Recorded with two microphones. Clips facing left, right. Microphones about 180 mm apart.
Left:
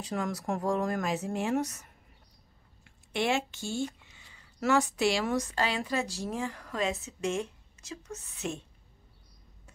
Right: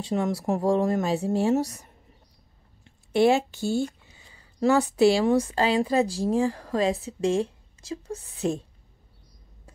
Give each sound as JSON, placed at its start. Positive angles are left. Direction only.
{"t": 0.0, "sound": "a woman's voice", "side_deg": -25}